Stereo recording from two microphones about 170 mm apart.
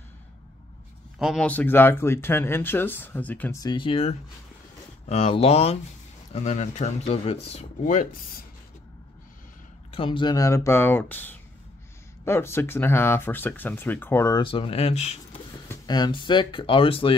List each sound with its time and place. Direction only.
1.2 s a man's voice: centre (ahead or behind)
1.5 s speech: 10° left (ahead or behind)
3.6 s speech: 30° left (ahead or behind)
7.5 s speech: 50° left (ahead or behind)
9.8 s speech: 30° left (ahead or behind); by 14.4 s 15° left (ahead or behind)
14.4 s speech: 30° left (ahead or behind)
15.7 s speech: 25° left (ahead or behind)